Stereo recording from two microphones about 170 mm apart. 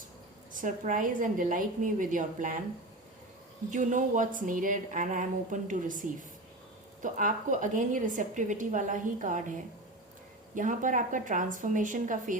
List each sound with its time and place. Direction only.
0.5 s a woman's voice: 50° right (ahead or behind)
3.7 s a woman's voice: 50° right (ahead or behind)
10.5 s a woman's voice: 50° right (ahead or behind)